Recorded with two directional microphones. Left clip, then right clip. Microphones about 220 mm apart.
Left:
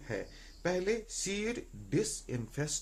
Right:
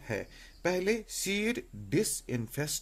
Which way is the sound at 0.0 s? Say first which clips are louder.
Right 3 dB; 45° right (ahead or behind).